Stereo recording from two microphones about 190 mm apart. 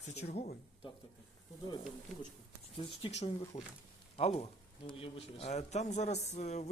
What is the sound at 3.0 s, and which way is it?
A man's voice, 30° left (ahead or behind).